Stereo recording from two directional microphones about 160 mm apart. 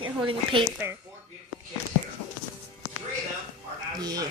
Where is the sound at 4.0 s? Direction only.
20° right (ahead or behind).